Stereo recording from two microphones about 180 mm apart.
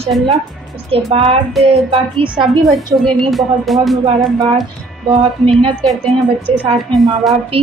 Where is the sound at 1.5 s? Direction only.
Centre (ahead or behind).